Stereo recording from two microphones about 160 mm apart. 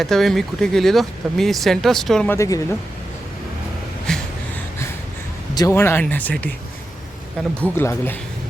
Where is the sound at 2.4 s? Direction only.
20° left (ahead or behind).